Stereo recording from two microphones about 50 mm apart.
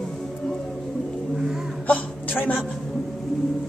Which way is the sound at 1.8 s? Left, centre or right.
Left.